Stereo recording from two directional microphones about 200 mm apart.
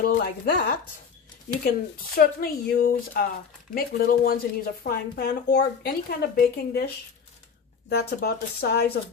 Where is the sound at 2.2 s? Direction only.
45° left (ahead or behind).